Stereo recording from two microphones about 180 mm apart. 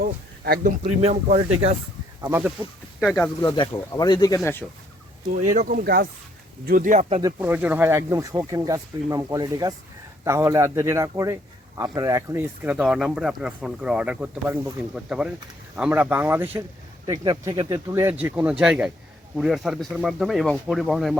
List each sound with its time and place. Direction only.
0.4 s speech: 60° right (ahead or behind)
0.9 s speech: 40° right (ahead or behind)
3.0 s speech: centre (ahead or behind)
3.4 s speech: 20° left (ahead or behind)
5.5 s speech: 50° right (ahead or behind)
7.2 s speech: 15° right (ahead or behind); by 21.2 s centre (ahead or behind)